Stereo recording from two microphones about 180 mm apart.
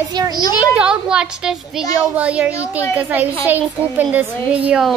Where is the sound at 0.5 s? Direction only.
5° right (ahead or behind).